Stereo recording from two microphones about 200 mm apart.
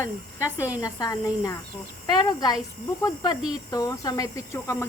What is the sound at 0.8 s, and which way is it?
Speech, 20° left (ahead or behind).